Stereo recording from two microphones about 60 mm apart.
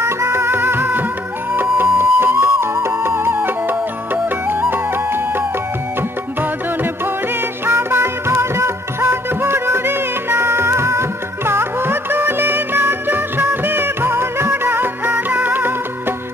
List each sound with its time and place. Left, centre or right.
0.0 s music: right
7.6 s music: right